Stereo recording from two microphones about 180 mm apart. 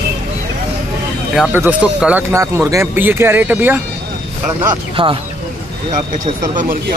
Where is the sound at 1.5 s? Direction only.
10° right (ahead or behind).